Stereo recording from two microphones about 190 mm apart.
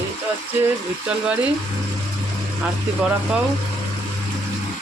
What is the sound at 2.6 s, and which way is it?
Speech, 5° right (ahead or behind).